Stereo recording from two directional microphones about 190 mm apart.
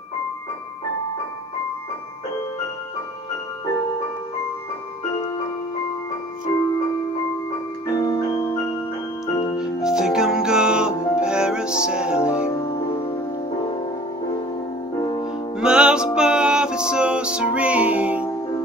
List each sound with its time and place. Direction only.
7.9 s music: 20° left (ahead or behind)
9.6 s music: 5° right (ahead or behind)
15.0 s music: 20° left (ahead or behind)
15.6 s music: 5° right (ahead or behind)